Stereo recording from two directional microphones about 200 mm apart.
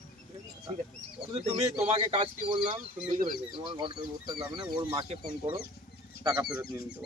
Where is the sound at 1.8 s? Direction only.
30° right (ahead or behind).